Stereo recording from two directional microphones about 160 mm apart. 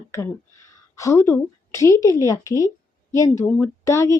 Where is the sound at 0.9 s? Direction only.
20° left (ahead or behind).